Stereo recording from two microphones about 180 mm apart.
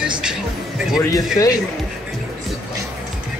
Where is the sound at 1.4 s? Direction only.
15° left (ahead or behind).